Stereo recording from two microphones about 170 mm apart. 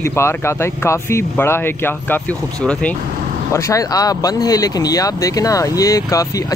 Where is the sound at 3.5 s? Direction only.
20° left (ahead or behind).